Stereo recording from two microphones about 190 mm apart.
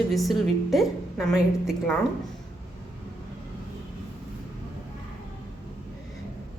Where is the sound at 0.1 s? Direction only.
Centre (ahead or behind).